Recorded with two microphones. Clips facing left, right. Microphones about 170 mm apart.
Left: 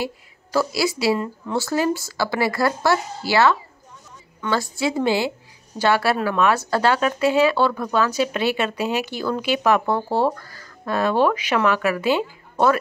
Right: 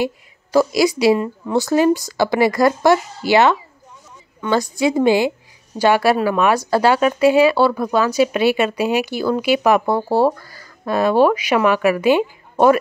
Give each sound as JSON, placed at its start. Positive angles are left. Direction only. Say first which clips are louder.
{"t": 0.0, "sound": "speech", "louder": "right 6 dB", "side_deg": -15}